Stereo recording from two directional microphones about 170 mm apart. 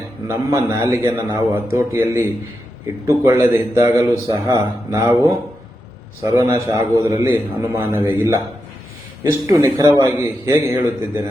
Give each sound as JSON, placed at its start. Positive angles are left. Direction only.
{"t": 0.3, "sound": "a man's voice", "side_deg": -15}